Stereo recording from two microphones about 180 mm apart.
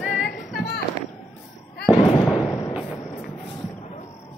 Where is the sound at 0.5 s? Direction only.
60° left (ahead or behind).